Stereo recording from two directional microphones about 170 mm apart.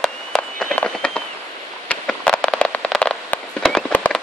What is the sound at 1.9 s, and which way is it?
Fireworks, 5° left (ahead or behind).